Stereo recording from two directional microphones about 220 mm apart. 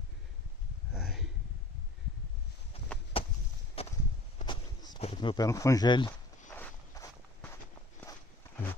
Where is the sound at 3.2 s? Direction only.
25° left (ahead or behind).